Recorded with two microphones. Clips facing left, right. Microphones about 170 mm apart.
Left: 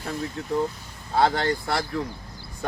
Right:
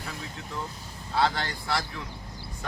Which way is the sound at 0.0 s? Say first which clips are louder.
Left 8 dB; 45° left (ahead or behind).